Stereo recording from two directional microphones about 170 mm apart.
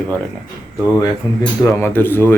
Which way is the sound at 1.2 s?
20° left (ahead or behind).